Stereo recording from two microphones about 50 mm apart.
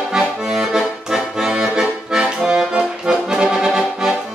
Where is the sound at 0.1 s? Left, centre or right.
Centre.